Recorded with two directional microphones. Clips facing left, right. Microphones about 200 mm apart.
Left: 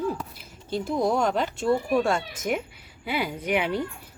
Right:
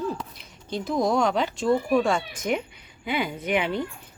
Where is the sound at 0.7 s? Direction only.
5° left (ahead or behind).